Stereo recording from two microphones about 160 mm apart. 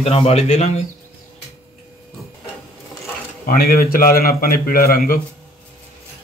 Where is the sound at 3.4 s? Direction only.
65° left (ahead or behind).